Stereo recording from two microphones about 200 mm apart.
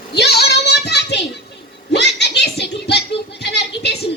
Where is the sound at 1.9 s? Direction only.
55° left (ahead or behind).